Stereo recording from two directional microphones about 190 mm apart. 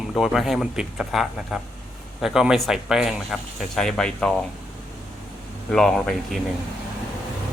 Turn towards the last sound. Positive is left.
turn(degrees=0)  # may be behind; listen again after turning